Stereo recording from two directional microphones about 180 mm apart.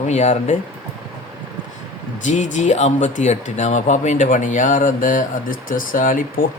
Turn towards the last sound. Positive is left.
turn(degrees=45)  # may be behind; listen again after turning